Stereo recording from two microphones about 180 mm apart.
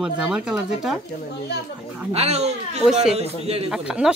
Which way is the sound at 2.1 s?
35° right (ahead or behind).